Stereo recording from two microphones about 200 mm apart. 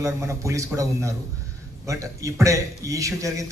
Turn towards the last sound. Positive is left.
turn(degrees=-15)  # may be behind; listen again after turning